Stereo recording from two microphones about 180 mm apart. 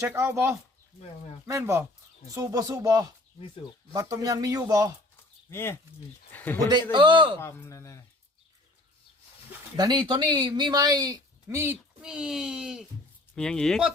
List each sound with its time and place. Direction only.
0.0 s speech: 15° right (ahead or behind)
5.5 s speech: 15° left (ahead or behind)
6.9 s speech: 25° right (ahead or behind)
7.3 s speech: 15° left (ahead or behind)
9.7 s speech: 25° right (ahead or behind); by 13.9 s centre (ahead or behind)